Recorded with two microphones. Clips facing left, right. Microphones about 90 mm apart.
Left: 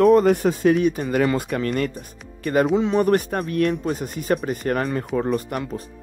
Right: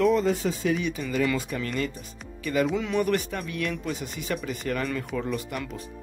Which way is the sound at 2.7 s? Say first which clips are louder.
Left 7 dB; 35° left (ahead or behind).